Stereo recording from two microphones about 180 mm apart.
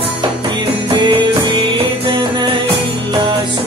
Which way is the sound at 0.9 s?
25° right (ahead or behind).